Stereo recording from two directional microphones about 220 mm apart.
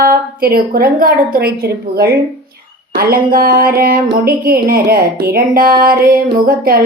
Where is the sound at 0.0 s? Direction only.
40° right (ahead or behind).